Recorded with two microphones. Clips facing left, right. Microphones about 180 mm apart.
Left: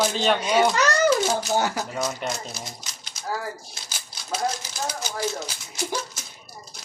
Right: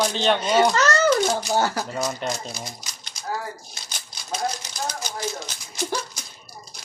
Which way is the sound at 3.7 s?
5° left (ahead or behind).